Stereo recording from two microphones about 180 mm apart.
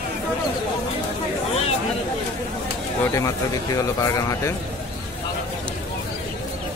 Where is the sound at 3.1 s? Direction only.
15° left (ahead or behind).